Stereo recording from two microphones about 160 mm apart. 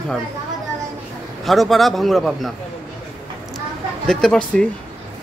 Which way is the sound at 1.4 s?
Centre (ahead or behind).